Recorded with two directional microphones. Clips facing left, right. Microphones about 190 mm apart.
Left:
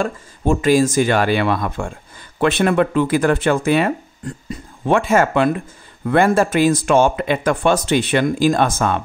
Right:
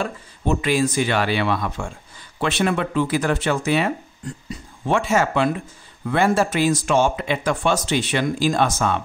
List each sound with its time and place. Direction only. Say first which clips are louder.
0.0 s speech: left 5 dB; 45° left (ahead or behind)